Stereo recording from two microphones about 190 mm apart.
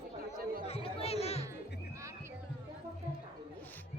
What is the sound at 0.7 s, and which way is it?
Music, 30° left (ahead or behind).